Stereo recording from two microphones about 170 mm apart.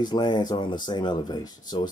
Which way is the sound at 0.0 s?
25° left (ahead or behind).